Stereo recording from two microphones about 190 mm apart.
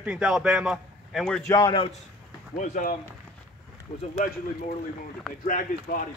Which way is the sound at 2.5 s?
40° left (ahead or behind).